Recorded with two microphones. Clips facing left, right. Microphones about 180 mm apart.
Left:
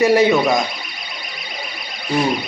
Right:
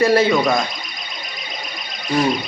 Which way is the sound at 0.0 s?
15° left (ahead or behind).